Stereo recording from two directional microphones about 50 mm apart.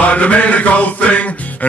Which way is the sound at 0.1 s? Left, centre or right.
Left.